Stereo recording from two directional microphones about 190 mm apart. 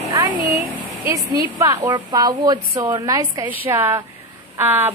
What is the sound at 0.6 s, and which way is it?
A woman's voice, 10° right (ahead or behind).